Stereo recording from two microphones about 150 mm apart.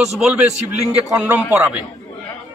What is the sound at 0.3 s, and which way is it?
A man's voice, 10° right (ahead or behind).